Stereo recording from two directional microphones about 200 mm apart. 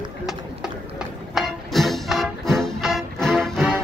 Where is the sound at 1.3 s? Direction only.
Centre (ahead or behind).